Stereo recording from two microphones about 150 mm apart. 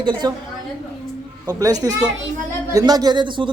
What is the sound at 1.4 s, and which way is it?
A man's voice, 25° right (ahead or behind).